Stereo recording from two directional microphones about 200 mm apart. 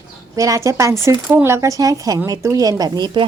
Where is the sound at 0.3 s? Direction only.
15° right (ahead or behind).